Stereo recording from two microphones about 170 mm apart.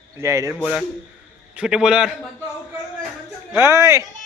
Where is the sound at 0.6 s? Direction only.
5° left (ahead or behind).